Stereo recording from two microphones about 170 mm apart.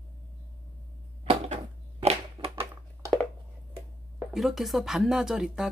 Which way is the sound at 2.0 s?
35° right (ahead or behind).